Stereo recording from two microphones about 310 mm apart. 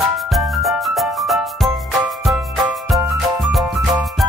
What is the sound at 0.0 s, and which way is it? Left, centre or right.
Music, centre.